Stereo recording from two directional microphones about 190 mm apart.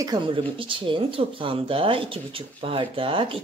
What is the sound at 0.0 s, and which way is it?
Speech, 25° right (ahead or behind).